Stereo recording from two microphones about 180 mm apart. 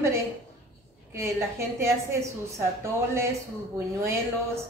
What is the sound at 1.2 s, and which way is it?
A woman's voice, 15° right (ahead or behind).